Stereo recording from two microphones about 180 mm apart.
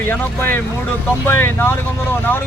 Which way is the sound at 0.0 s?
10° left (ahead or behind).